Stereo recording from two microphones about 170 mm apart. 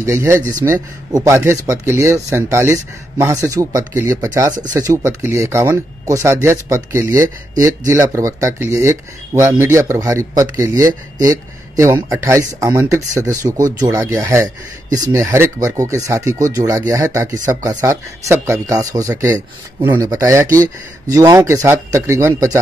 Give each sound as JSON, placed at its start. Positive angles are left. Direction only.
{"t": 0.0, "sound": "speech", "side_deg": -15}
{"t": 13.5, "sound": "speech", "side_deg": -50}
{"t": 13.7, "sound": "speech", "side_deg": -20}